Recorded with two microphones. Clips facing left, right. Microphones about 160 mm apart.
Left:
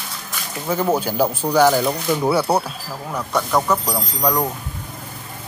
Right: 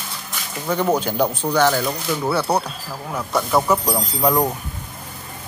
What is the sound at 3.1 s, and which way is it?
Speech, 5° right (ahead or behind).